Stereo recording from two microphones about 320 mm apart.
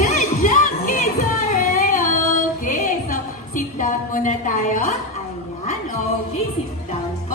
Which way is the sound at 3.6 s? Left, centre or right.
Left.